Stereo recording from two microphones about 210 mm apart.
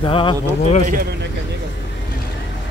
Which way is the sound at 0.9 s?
45° right (ahead or behind).